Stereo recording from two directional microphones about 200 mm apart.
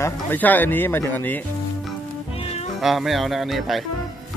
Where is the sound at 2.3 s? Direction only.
30° left (ahead or behind).